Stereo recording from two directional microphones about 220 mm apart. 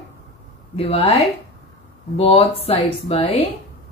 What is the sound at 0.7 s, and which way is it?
A woman's voice, 25° left (ahead or behind).